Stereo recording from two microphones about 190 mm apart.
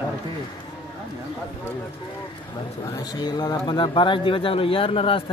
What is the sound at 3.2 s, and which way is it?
Speech, 20° left (ahead or behind).